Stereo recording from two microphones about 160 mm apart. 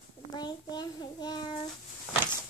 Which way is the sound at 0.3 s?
25° left (ahead or behind).